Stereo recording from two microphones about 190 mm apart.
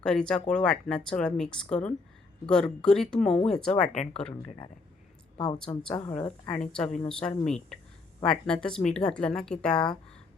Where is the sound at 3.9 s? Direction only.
35° left (ahead or behind).